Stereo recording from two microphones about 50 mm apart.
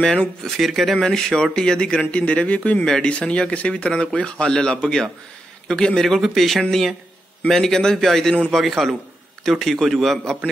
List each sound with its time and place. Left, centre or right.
0.4 s a man's voice: centre
0.9 s speech: centre; by 2.8 s left
2.8 s speech: centre
6.0 s a man's voice: centre